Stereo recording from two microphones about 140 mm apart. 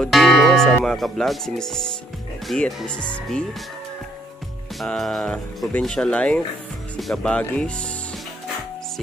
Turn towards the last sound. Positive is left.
turn(degrees=5)  # may be behind; listen again after turning